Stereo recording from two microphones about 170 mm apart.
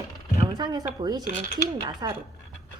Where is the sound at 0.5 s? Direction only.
25° right (ahead or behind).